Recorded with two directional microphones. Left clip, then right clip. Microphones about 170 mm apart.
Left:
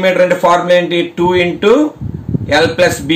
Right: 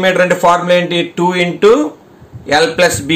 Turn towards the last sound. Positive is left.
turn(degrees=-40)  # may be behind; listen again after turning